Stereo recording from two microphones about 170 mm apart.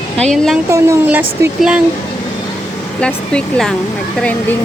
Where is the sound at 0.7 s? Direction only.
15° right (ahead or behind).